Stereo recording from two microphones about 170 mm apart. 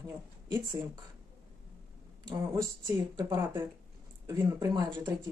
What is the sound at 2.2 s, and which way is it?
Speech, 20° right (ahead or behind).